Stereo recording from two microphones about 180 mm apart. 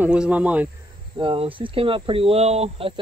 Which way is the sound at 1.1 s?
30° right (ahead or behind).